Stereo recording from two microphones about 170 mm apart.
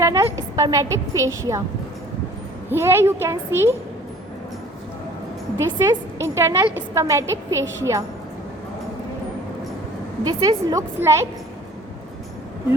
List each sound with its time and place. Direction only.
0.0 s a woman's voice: 20° right (ahead or behind)
2.6 s a woman's voice: 15° right (ahead or behind)
5.7 s a woman's voice: 15° right (ahead or behind)
10.2 s a woman's voice: 20° right (ahead or behind)